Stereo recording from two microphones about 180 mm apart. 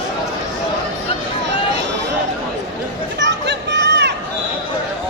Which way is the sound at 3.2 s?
70° right (ahead or behind).